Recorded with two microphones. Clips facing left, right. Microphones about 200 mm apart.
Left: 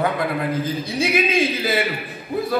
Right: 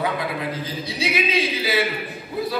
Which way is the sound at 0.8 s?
50° left (ahead or behind).